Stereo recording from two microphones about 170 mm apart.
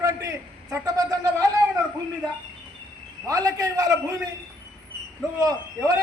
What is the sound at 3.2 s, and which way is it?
Speech, 20° right (ahead or behind).